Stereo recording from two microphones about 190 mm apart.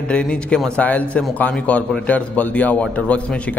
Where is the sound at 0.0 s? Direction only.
5° left (ahead or behind).